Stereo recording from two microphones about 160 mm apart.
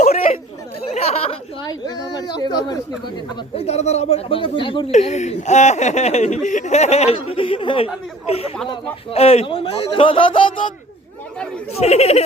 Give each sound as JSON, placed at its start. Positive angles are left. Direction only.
{"t": 0.0, "sound": "chatter", "side_deg": 45}
{"t": 0.9, "sound": "a sound", "side_deg": 40}
{"t": 1.6, "sound": "a sound", "side_deg": 25}
{"t": 3.5, "sound": "a man's voice", "side_deg": 40}
{"t": 4.9, "sound": "a man's voice", "side_deg": 45}
{"t": 11.8, "sound": "a man's voice", "side_deg": 40}